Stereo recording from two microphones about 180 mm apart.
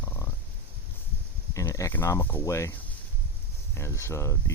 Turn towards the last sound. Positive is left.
turn(degrees=15)  # may be behind; listen again after turning